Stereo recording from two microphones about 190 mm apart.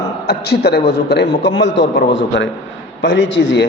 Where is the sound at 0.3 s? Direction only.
60° left (ahead or behind).